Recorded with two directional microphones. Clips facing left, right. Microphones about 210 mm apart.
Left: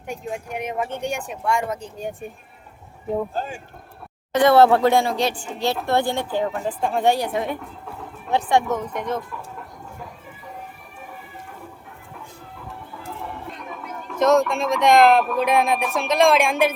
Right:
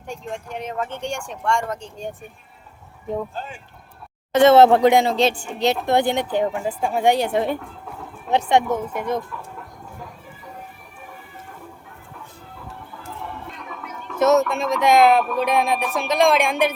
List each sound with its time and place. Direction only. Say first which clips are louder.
0.1 s speech: left 1 dB; 10° left (ahead or behind)
4.4 s speech: right 2 dB; 20° right (ahead or behind)
6.6 s speech: even; 10° right (ahead or behind)
7.1 s speech: right 2 dB; 25° right (ahead or behind)
8.6 s speech: right 1 dB; 10° right (ahead or behind)
14.2 s speech: even; 5° right (ahead or behind)